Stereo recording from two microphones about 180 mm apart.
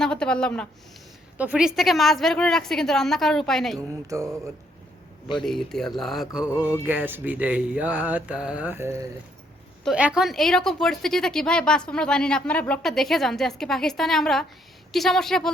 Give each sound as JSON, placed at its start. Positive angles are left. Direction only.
{"t": 0.0, "sound": "a woman's voice", "side_deg": 5}
{"t": 1.4, "sound": "a woman's voice", "side_deg": -5}
{"t": 3.8, "sound": "speech", "side_deg": -20}
{"t": 5.4, "sound": "a woman's voice", "side_deg": 0}